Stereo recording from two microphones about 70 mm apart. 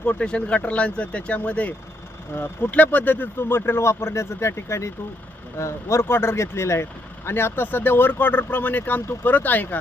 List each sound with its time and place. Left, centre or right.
0.0 s speech: centre